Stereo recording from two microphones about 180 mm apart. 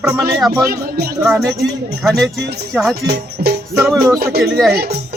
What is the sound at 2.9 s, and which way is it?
Speech, 60° right (ahead or behind).